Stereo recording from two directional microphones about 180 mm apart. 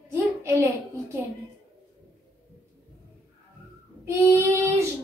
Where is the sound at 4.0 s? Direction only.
15° right (ahead or behind).